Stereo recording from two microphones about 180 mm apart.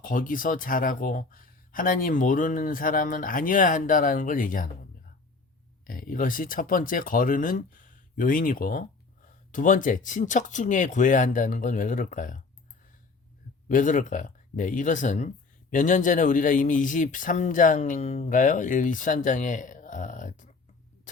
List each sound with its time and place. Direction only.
0.0 s a man's voice: 50° left (ahead or behind)
5.8 s a man's voice: 50° left (ahead or behind)
13.7 s a man's voice: 45° left (ahead or behind)